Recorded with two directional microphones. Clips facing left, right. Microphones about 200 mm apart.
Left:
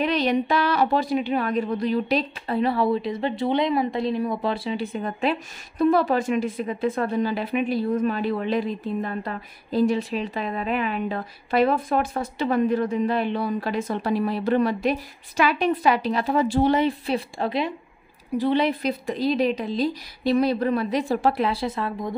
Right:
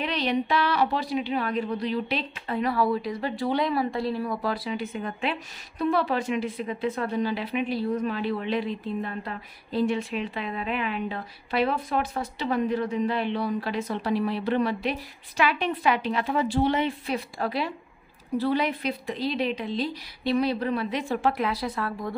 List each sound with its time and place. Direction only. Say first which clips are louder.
0.0 s a woman's voice: left 5 dB; 45° left (ahead or behind); by 18.7 s 25° left (ahead or behind)
18.8 s a woman's voice: left 4 dB; 45° left (ahead or behind); by 22.1 s 20° left (ahead or behind)